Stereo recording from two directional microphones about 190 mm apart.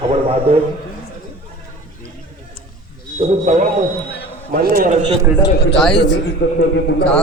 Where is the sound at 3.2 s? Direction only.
35° right (ahead or behind).